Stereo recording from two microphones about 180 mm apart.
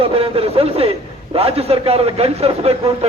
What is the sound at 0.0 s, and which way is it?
A man's voice, 30° right (ahead or behind).